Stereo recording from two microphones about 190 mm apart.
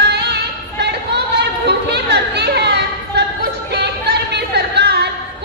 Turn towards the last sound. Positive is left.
turn(degrees=-60)  # may be behind; listen again after turning